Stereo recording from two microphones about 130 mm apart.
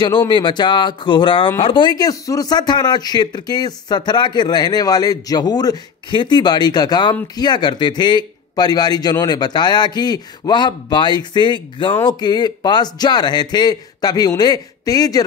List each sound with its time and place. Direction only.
0.3 s speech: 35° left (ahead or behind)